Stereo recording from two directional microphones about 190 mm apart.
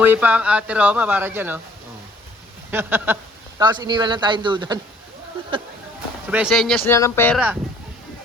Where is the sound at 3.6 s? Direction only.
20° right (ahead or behind).